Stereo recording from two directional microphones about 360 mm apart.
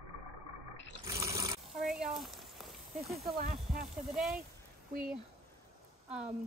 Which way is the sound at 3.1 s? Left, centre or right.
Centre.